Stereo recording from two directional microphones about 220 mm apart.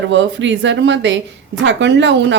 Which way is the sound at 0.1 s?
55° right (ahead or behind).